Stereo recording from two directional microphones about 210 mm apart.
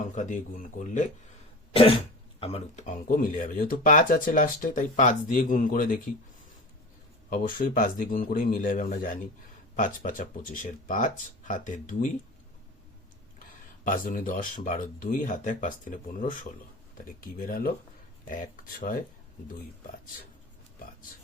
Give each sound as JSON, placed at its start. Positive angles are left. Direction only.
{"t": 0.0, "sound": "speech", "side_deg": 35}
{"t": 1.7, "sound": "cough", "side_deg": 25}
{"t": 2.4, "sound": "speech", "side_deg": 30}
{"t": 7.3, "sound": "speech", "side_deg": 40}
{"t": 13.8, "sound": "speech", "side_deg": 40}